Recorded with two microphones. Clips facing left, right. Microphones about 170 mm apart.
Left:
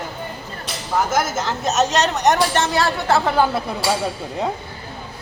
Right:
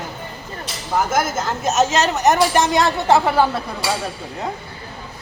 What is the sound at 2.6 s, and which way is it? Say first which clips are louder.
Speech: right 2 dB; 15° right (ahead or behind).